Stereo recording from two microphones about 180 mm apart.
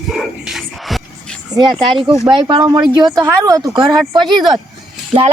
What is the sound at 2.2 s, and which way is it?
Speech, 25° right (ahead or behind).